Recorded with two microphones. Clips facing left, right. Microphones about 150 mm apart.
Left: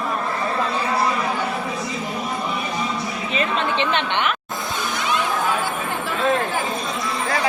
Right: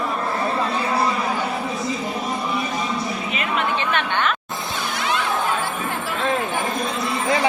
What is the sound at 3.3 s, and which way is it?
Chatter, 30° left (ahead or behind).